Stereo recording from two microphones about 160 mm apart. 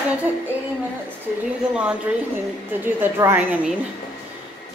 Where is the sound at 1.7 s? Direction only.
5° right (ahead or behind).